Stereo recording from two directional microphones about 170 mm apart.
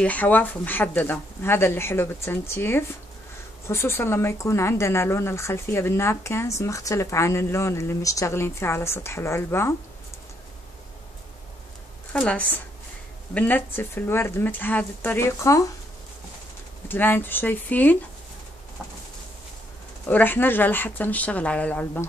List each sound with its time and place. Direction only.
0.0 s a woman's voice: 10° left (ahead or behind)
12.1 s a woman's voice: 5° left (ahead or behind)
16.8 s a woman's voice: 10° left (ahead or behind)
20.1 s a woman's voice: 10° left (ahead or behind)